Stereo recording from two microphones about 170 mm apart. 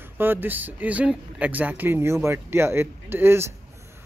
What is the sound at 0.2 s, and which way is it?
A man's voice, 10° right (ahead or behind).